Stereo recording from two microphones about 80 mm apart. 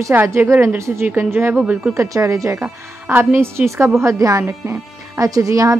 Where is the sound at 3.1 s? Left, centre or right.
Right.